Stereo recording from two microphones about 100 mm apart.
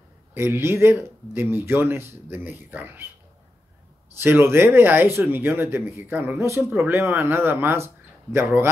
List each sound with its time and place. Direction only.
0.3 s speech: 25° right (ahead or behind)
4.2 s speech: 25° right (ahead or behind)